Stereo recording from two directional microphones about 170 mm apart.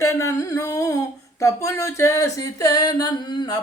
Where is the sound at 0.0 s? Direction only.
15° left (ahead or behind).